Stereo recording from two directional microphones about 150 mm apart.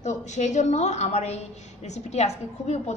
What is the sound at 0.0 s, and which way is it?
A woman's voice, 50° left (ahead or behind).